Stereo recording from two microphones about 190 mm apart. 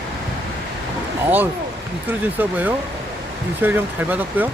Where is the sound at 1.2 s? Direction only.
10° right (ahead or behind).